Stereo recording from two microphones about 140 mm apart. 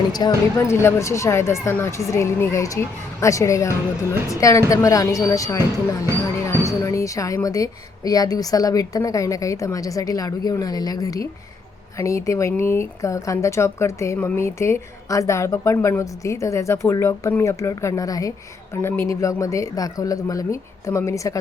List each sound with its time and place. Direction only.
0.1 s speech: 25° left (ahead or behind)